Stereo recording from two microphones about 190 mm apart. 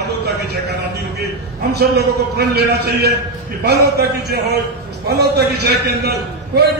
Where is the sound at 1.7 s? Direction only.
55° right (ahead or behind).